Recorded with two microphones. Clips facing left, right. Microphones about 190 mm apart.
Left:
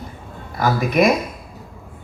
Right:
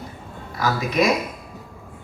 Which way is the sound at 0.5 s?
55° left (ahead or behind).